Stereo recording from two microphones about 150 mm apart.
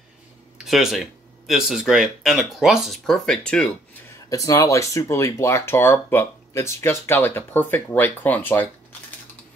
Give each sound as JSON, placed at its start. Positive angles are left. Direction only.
{"t": 0.7, "sound": "speech", "side_deg": 0}
{"t": 4.3, "sound": "speech", "side_deg": 20}